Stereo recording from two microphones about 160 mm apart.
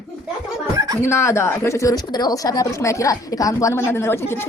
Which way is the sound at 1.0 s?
15° left (ahead or behind).